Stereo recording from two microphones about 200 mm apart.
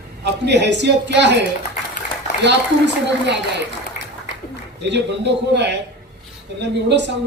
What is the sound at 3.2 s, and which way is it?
Speech, 60° right (ahead or behind).